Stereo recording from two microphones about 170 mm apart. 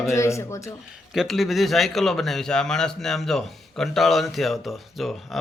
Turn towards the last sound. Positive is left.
turn(degrees=0)  # may be behind; listen again after turning